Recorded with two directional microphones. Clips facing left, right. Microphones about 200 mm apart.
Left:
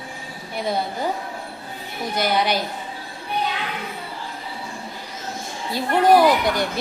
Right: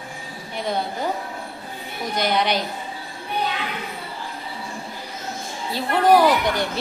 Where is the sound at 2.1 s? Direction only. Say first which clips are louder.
Even; 5° left (ahead or behind).